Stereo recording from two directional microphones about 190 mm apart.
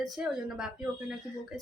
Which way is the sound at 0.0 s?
Centre (ahead or behind).